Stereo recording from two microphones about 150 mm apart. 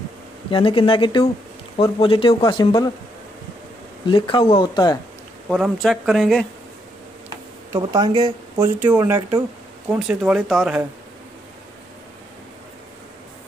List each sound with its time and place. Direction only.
0.5 s speech: 35° left (ahead or behind)
4.1 s speech: 35° left (ahead or behind)
5.5 s speech: centre (ahead or behind)
7.7 s speech: 25° right (ahead or behind)
8.5 s speech: 15° right (ahead or behind)